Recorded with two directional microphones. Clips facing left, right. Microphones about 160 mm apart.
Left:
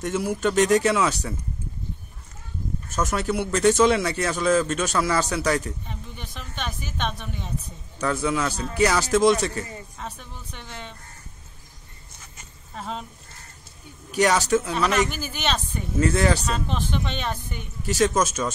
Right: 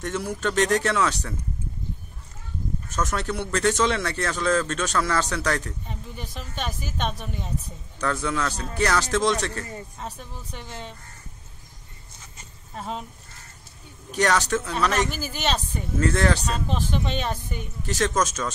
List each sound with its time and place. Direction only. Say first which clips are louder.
0.0 s speech: left 3 dB; 5° left (ahead or behind)
3.0 s speech: left 3 dB; 5° left (ahead or behind)
6.3 s speech: right 1 dB; 40° right (ahead or behind)
8.0 s speech: left 2 dB; 5° left (ahead or behind)
10.0 s speech: right 1 dB; 35° right (ahead or behind)
10.6 s speech: right 1 dB; 5° right (ahead or behind)
12.7 s speech: even; 5° right (ahead or behind)
14.1 s speech: left 2 dB; 10° left (ahead or behind)